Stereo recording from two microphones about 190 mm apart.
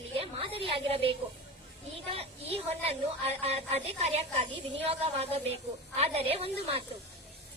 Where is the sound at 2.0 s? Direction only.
30° right (ahead or behind).